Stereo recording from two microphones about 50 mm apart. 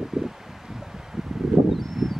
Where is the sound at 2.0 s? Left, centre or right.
Centre.